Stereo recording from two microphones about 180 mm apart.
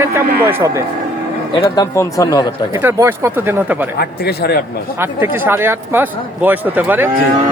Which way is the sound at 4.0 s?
65° left (ahead or behind).